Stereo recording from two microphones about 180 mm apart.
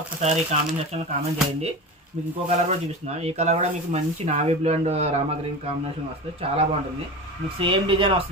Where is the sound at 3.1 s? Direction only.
35° right (ahead or behind).